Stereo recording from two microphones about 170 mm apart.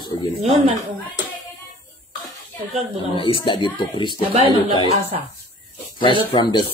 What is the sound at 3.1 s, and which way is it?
Speech, 30° left (ahead or behind).